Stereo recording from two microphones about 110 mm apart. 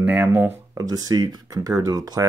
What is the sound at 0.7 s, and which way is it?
Speech, 35° right (ahead or behind).